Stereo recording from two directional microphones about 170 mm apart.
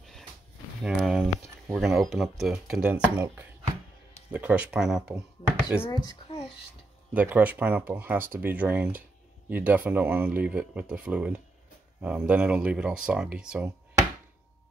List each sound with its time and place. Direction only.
0.8 s speech: centre (ahead or behind)
5.8 s speech: 25° left (ahead or behind)
7.2 s speech: 10° right (ahead or behind)